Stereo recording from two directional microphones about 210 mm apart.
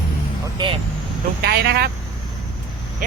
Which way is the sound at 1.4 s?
50° right (ahead or behind).